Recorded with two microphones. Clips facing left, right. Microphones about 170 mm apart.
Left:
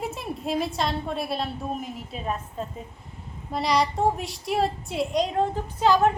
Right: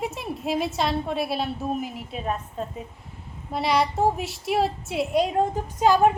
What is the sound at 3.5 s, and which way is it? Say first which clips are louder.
A woman's voice: right 1 dB; centre (ahead or behind).